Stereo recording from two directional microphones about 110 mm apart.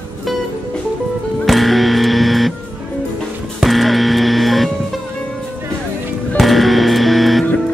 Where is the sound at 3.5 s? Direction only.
Centre (ahead or behind).